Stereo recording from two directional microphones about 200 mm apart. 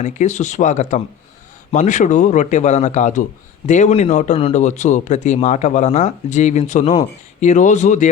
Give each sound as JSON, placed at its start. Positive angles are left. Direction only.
{"t": 0.0, "sound": "speech", "side_deg": 35}